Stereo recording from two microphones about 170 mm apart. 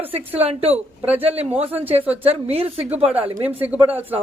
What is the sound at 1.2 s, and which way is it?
A woman's voice, 35° right (ahead or behind).